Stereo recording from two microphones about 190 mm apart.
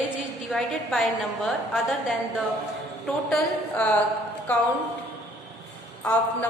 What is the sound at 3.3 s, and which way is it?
Speech, 5° left (ahead or behind).